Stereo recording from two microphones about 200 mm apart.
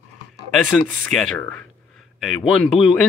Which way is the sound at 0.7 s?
5° left (ahead or behind).